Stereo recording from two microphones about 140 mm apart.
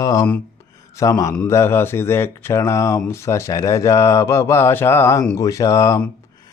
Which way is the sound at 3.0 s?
20° left (ahead or behind).